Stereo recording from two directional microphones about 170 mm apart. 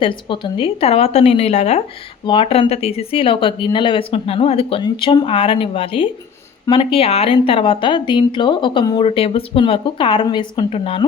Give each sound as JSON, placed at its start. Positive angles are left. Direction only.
{"t": 0.0, "sound": "speech", "side_deg": 30}